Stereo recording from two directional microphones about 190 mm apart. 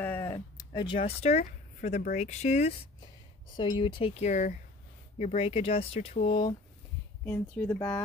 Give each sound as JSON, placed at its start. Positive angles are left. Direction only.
{"t": 0.0, "sound": "a sound", "side_deg": 15}
{"t": 1.0, "sound": "speech", "side_deg": 35}
{"t": 3.5, "sound": "speech", "side_deg": 25}
{"t": 7.2, "sound": "speech", "side_deg": 10}